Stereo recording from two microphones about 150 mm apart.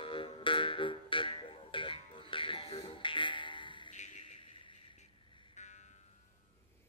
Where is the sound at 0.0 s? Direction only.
35° left (ahead or behind).